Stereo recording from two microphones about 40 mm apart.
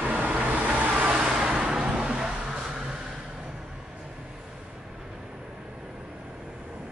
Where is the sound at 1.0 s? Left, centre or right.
Centre.